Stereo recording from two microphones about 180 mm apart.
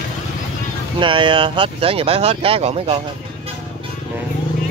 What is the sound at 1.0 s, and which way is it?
Speech, 25° right (ahead or behind).